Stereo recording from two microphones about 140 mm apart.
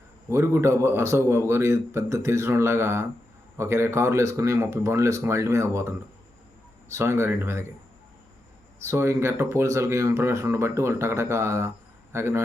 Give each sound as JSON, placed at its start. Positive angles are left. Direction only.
{"t": 0.3, "sound": "speech", "side_deg": -20}
{"t": 8.8, "sound": "a man's voice", "side_deg": -20}